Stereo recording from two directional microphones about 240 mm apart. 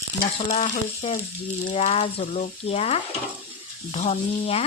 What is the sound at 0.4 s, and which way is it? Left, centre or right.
Frying, left.